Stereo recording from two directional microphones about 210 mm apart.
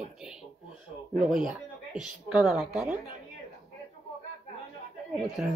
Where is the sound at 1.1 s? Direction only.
Centre (ahead or behind).